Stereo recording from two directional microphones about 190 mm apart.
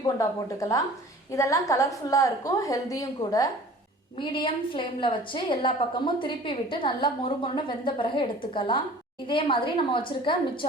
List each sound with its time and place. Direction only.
0.0 s a woman's voice: 20° left (ahead or behind)